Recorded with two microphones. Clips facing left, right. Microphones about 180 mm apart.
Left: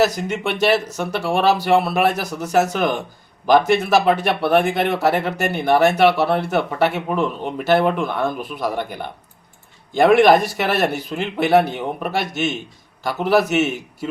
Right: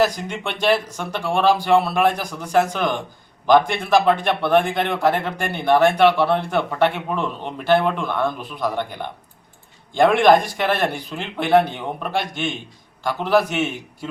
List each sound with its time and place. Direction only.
0.0 s speech: 5° left (ahead or behind)